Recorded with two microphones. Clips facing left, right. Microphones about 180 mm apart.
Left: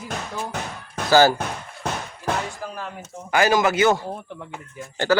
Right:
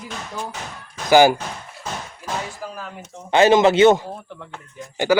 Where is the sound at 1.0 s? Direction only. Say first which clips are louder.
Right 3 dB; 15° right (ahead or behind).